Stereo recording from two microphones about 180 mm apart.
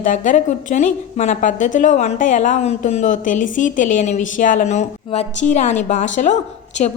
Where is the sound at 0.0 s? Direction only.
45° left (ahead or behind).